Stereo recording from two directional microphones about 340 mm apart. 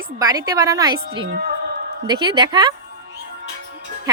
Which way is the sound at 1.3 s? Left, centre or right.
Right.